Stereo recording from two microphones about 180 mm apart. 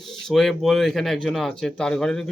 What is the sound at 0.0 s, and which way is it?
A man's voice, centre (ahead or behind).